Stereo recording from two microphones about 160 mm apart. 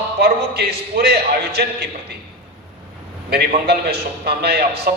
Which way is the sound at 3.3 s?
90° right.